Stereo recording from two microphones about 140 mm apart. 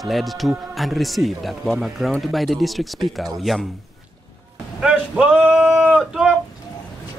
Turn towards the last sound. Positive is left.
turn(degrees=-5)  # may be behind; listen again after turning